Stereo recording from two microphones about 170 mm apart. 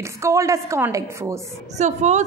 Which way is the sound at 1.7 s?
45° right (ahead or behind).